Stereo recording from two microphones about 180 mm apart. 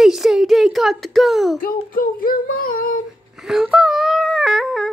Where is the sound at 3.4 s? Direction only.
Centre (ahead or behind).